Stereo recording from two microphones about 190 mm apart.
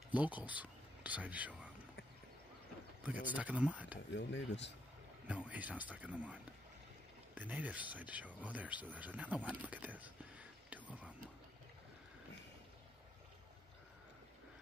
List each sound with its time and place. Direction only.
0.1 s speech: 10° right (ahead or behind)
3.3 s speech: 10° right (ahead or behind)
4.1 s speech: 70° left (ahead or behind)
5.2 s speech: 5° right (ahead or behind)
9.6 s vehicle: 10° right (ahead or behind)